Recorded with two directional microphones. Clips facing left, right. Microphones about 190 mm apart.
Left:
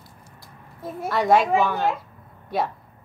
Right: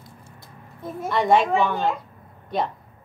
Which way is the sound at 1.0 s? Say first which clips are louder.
Even; centre (ahead or behind).